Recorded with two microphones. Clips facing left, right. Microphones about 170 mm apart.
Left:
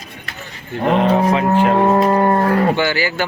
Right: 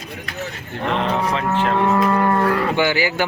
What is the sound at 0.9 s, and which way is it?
Speech, 45° left (ahead or behind).